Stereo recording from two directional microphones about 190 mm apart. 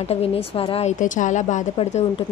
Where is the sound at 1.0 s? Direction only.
40° left (ahead or behind).